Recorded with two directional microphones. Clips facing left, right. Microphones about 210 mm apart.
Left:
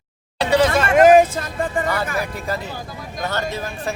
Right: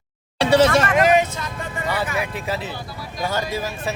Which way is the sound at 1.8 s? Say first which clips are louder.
Left 5 dB; 50° left (ahead or behind).